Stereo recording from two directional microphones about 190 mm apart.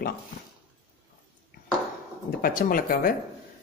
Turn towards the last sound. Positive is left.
turn(degrees=50)  # may be behind; listen again after turning